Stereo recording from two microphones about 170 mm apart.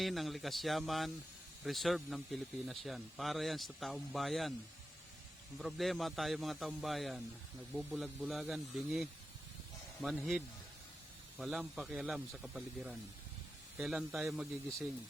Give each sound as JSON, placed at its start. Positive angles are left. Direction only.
{"t": 0.0, "sound": "speech", "side_deg": 0}
{"t": 5.5, "sound": "speech", "side_deg": 0}